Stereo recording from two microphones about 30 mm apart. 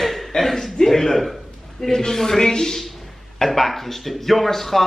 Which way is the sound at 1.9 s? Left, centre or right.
Centre.